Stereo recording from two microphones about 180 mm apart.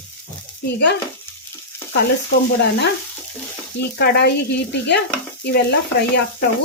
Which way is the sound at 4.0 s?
65° left (ahead or behind).